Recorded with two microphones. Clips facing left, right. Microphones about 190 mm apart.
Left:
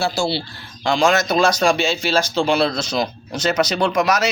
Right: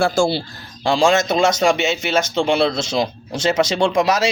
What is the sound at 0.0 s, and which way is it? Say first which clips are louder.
Speech: right 4 dB; 45° right (ahead or behind).